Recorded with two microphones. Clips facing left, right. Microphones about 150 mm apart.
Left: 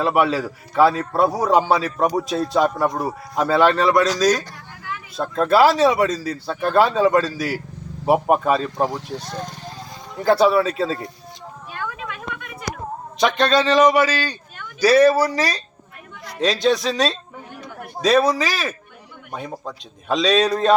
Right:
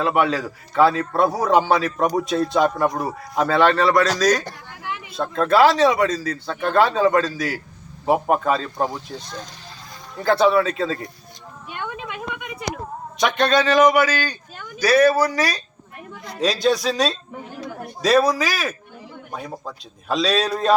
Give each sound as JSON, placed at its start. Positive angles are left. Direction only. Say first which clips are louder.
{"t": 0.0, "sound": "a man's voice", "louder": "left 1 dB", "side_deg": 5}
{"t": 5.5, "sound": "a man's voice", "louder": "even", "side_deg": 5}
{"t": 9.2, "sound": "speech", "louder": "left 5 dB", "side_deg": 60}
{"t": 10.2, "sound": "a man's voice", "louder": "left 1 dB", "side_deg": 5}
{"t": 10.8, "sound": "speech", "louder": "left 1 dB", "side_deg": 30}
{"t": 11.7, "sound": "a sound", "louder": "even", "side_deg": -25}
{"t": 13.2, "sound": "a man's voice", "louder": "left 1 dB", "side_deg": 0}
{"t": 13.8, "sound": "speech", "louder": "even", "side_deg": 30}
{"t": 16.4, "sound": "a man's voice", "louder": "left 1 dB", "side_deg": -5}